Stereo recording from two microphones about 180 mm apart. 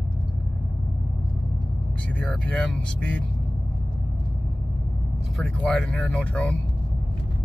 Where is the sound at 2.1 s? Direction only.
5° left (ahead or behind).